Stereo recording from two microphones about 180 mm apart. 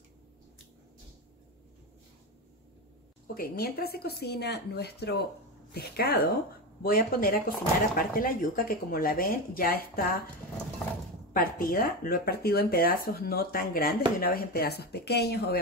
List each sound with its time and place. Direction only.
3.3 s speech: 55° left (ahead or behind)
11.3 s speech: 55° left (ahead or behind)